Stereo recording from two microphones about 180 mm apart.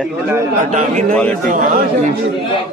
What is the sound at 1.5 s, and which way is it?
Speech, 50° right (ahead or behind).